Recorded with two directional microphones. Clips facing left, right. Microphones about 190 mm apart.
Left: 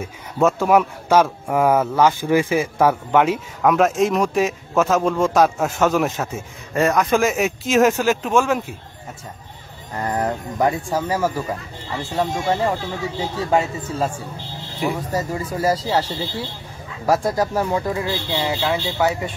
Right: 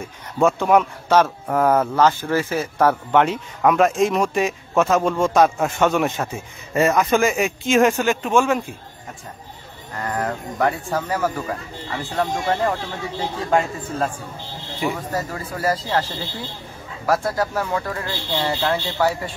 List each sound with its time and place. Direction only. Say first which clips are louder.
0.0 s speech: even; 5° left (ahead or behind)
10.0 s speech: left 2 dB; 25° left (ahead or behind)
10.6 s speech: left 2 dB; 10° left (ahead or behind)
15.1 s speech: left 3 dB; 15° left (ahead or behind)
18.9 s speech: left 1 dB; 15° left (ahead or behind)